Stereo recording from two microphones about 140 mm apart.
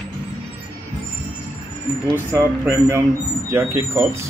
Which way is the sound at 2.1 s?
15° right (ahead or behind).